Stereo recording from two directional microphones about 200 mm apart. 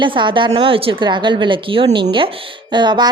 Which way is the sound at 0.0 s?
25° right (ahead or behind).